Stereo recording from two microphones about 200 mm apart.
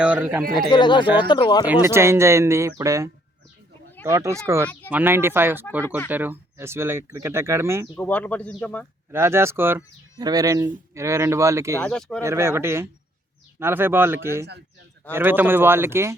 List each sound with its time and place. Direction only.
0.0 s speech: 10° right (ahead or behind)
0.7 s speech: 20° left (ahead or behind)
1.6 s speech: 15° right (ahead or behind)
7.9 s speech: 10° left (ahead or behind)
9.1 s speech: 10° right (ahead or behind)
11.8 s speech: 5° left (ahead or behind)
12.2 s speech: 15° right (ahead or behind)